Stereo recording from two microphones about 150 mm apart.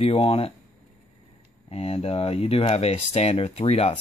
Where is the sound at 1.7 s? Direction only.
45° left (ahead or behind).